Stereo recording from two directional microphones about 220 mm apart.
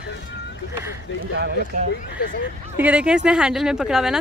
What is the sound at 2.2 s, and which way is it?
Speech, 45° left (ahead or behind).